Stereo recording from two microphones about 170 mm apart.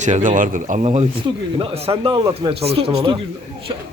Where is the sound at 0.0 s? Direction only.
45° right (ahead or behind); by 3.2 s 30° right (ahead or behind).